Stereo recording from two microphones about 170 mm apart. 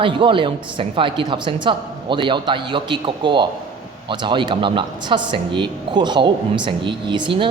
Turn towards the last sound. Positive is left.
turn(degrees=-30)  # may be behind; listen again after turning